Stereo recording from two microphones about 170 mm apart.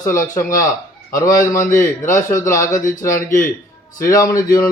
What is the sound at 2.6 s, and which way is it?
A man's voice, 50° left (ahead or behind).